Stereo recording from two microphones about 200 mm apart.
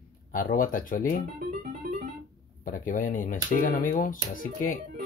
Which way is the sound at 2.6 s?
40° left (ahead or behind).